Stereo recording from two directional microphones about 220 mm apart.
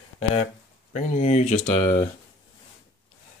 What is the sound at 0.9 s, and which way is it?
Speech, 30° left (ahead or behind).